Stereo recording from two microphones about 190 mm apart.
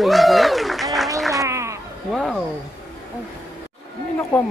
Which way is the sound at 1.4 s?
15° right (ahead or behind).